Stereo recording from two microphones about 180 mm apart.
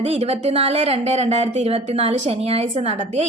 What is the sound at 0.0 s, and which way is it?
Speech, 35° right (ahead or behind).